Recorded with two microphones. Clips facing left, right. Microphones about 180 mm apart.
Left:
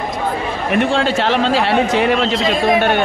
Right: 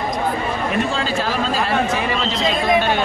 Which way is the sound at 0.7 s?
65° left (ahead or behind).